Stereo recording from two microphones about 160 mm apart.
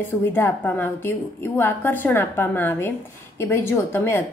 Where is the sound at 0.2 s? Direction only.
15° left (ahead or behind).